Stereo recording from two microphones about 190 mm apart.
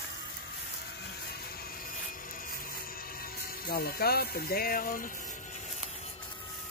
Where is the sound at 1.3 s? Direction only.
55° left (ahead or behind); by 6.1 s 35° left (ahead or behind).